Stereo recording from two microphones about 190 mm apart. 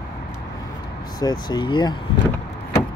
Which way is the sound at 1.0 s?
20° left (ahead or behind).